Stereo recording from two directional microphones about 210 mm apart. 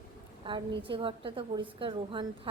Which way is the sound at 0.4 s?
20° right (ahead or behind).